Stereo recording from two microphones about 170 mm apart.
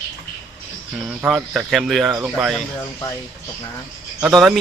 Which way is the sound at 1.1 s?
5° right (ahead or behind).